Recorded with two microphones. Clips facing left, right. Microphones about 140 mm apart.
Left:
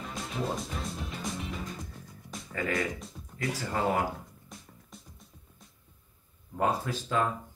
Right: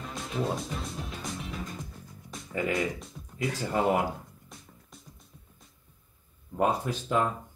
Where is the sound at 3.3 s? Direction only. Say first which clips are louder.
Right 3 dB; 20° right (ahead or behind).